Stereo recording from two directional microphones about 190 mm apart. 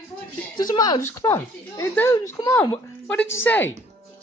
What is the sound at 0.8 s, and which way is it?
Speech, 20° left (ahead or behind).